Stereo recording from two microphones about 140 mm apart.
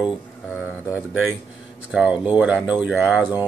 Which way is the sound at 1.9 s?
5° right (ahead or behind).